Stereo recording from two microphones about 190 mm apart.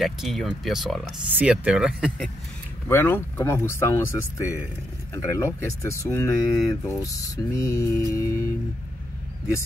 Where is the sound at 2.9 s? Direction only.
10° left (ahead or behind).